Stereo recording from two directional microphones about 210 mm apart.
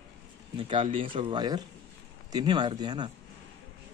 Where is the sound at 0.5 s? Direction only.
25° right (ahead or behind).